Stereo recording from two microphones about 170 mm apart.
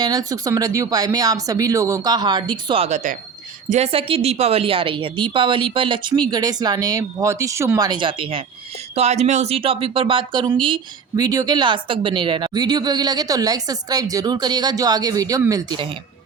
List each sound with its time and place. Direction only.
0.0 s a woman's voice: 20° right (ahead or behind)